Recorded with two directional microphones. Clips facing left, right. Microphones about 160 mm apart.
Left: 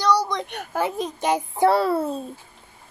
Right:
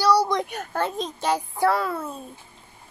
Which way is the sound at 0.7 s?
10° left (ahead or behind).